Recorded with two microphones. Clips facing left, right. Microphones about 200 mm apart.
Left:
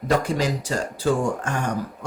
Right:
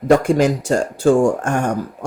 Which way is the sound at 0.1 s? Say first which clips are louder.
Right 8 dB; 50° right (ahead or behind).